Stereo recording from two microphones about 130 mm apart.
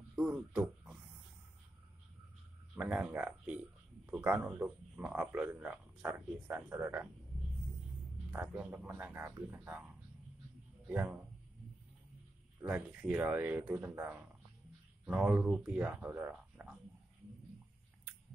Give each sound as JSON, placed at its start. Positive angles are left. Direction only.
{"t": 0.1, "sound": "a sound", "side_deg": -5}
{"t": 2.7, "sound": "speech", "side_deg": -10}
{"t": 8.3, "sound": "speech", "side_deg": -10}
{"t": 12.5, "sound": "speech", "side_deg": -15}